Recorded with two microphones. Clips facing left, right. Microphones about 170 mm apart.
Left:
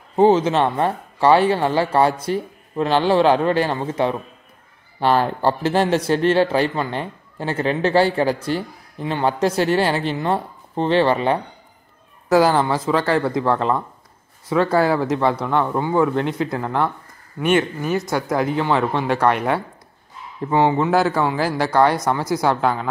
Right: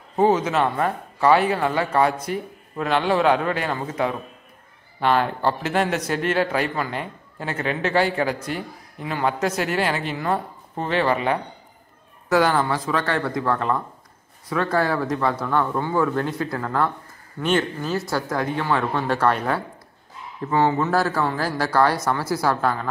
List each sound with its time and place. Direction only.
0.1 s speech: 30° left (ahead or behind)
20.4 s speech: 15° left (ahead or behind)
21.2 s speech: 5° left (ahead or behind)
21.5 s speech: 20° left (ahead or behind)